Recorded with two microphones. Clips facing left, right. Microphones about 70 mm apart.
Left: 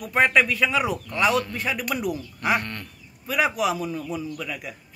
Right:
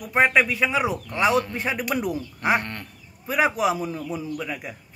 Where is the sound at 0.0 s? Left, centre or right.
Centre.